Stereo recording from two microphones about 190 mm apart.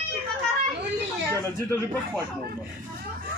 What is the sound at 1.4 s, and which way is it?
Speech, 15° left (ahead or behind).